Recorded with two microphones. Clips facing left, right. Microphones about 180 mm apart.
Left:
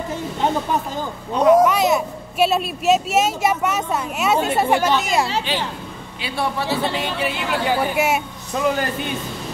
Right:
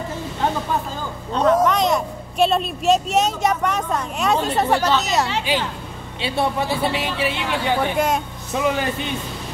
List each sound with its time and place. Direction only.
1.3 s speech: 10° left (ahead or behind)
5.5 s speech: 10° right (ahead or behind)
6.2 s a woman's voice: 20° right (ahead or behind)
6.8 s speech: 5° right (ahead or behind)